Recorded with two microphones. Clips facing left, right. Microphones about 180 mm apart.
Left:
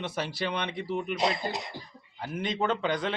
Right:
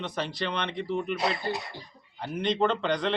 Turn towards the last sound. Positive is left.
turn(degrees=5)  # may be behind; listen again after turning